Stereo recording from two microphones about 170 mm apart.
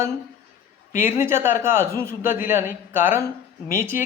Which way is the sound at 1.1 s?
15° right (ahead or behind).